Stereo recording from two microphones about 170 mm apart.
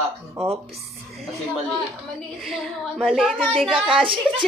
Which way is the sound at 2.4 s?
Centre (ahead or behind).